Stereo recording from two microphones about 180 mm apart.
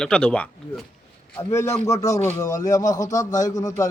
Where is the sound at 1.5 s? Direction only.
15° left (ahead or behind).